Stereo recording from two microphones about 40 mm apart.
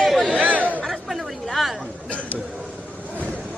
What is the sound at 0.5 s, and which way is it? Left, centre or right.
Chatter, right.